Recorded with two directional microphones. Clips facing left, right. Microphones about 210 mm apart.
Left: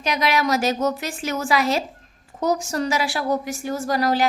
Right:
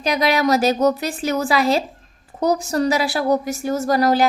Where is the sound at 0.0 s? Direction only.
35° right (ahead or behind).